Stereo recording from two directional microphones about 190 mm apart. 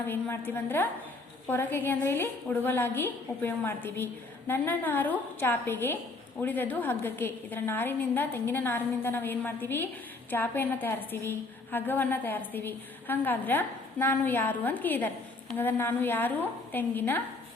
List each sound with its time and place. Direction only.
0.0 s a woman's voice: 10° left (ahead or behind)